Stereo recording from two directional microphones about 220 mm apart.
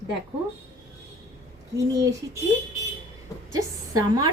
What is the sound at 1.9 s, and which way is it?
Speech, 15° right (ahead or behind).